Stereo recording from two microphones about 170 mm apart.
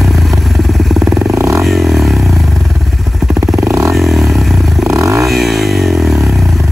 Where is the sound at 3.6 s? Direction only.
20° right (ahead or behind).